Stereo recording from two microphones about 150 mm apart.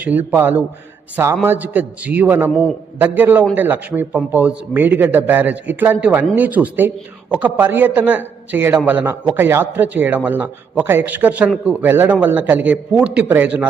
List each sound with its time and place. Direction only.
0.0 s a man's voice: 10° right (ahead or behind)
2.5 s a man's voice: 5° left (ahead or behind)
3.0 s a man's voice: 10° right (ahead or behind)